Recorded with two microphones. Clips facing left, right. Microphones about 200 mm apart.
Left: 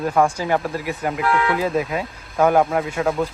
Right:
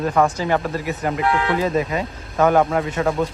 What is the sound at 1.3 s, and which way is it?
Speech, 30° right (ahead or behind).